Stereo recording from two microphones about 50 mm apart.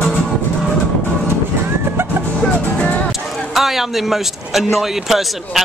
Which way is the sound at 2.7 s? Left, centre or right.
Left.